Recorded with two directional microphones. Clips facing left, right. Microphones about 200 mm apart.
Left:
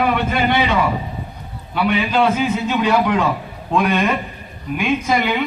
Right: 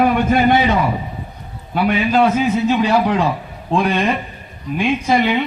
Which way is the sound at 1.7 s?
45° right (ahead or behind).